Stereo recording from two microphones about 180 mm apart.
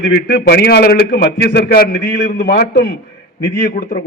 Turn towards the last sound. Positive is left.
turn(degrees=65)  # may be behind; listen again after turning